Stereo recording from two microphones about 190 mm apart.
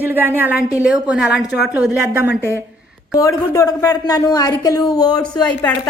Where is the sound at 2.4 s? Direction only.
10° right (ahead or behind).